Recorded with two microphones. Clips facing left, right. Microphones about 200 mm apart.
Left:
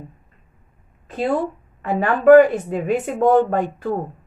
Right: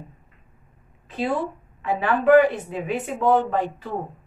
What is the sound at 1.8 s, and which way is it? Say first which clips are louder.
A woman's voice: left 2 dB; 45° left (ahead or behind).